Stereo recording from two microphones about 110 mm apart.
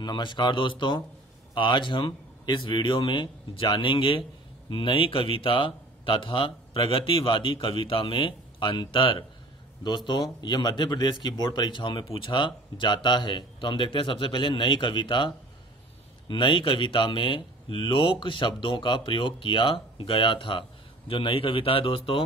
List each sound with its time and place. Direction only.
0.0 s a man's voice: 45° left (ahead or behind)